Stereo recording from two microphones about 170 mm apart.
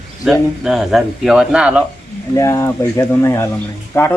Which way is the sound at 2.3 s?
20° left (ahead or behind).